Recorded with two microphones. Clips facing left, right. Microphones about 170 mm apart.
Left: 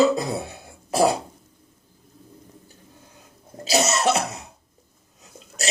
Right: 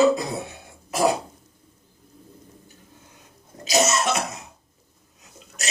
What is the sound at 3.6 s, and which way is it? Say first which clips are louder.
Cough: left 1 dB; 30° left (ahead or behind).